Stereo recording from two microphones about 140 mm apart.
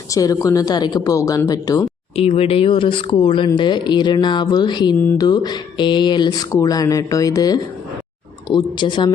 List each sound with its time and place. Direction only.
0.1 s speech: 25° left (ahead or behind)
2.1 s speech: 45° left (ahead or behind)